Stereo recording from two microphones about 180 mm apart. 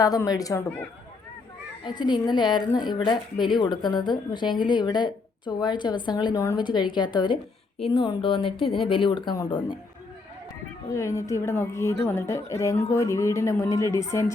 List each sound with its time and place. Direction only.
0.0 s a woman's voice: 20° left (ahead or behind)
10.9 s a woman's voice: 15° left (ahead or behind)